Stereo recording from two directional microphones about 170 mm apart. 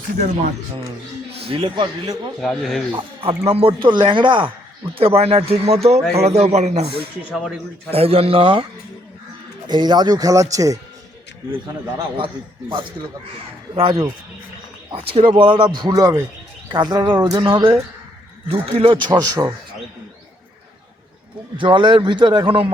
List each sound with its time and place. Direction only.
1.5 s speech: 30° right (ahead or behind)
2.4 s speech: centre (ahead or behind)
2.9 s speech: 35° right (ahead or behind)
7.3 s speech: centre (ahead or behind)
7.9 s speech: 35° right (ahead or behind)
9.6 s speech: 25° right (ahead or behind)
11.6 s speech: 30° right (ahead or behind)
21.6 s speech: 30° right (ahead or behind)